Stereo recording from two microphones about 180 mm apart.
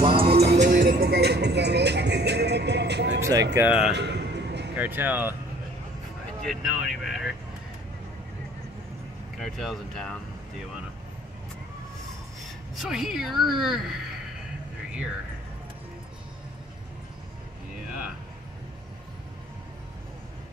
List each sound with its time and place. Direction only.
0.2 s music: 60° right (ahead or behind)
3.2 s music: 20° right (ahead or behind)
3.5 s speech: 5° right (ahead or behind)
3.9 s a sound: 70° right (ahead or behind)
4.7 s speech: 10° right (ahead or behind)
6.4 s a woman's voice: centre (ahead or behind)
9.4 s a woman's voice: centre (ahead or behind)
12.7 s a woman's voice: centre (ahead or behind)